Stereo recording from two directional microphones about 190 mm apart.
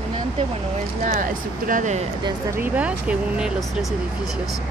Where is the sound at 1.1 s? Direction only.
45° right (ahead or behind).